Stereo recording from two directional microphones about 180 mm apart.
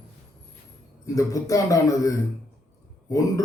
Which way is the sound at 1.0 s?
20° left (ahead or behind).